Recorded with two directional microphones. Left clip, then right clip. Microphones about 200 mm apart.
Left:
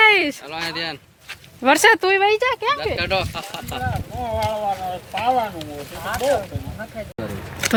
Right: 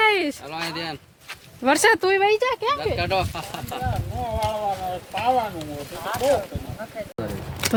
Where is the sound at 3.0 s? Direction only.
45° right (ahead or behind).